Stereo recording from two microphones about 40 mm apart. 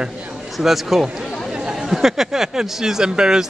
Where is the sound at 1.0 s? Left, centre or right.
Right.